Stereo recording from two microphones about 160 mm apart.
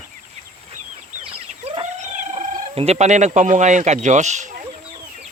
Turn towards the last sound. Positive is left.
turn(degrees=-50)  # may be behind; listen again after turning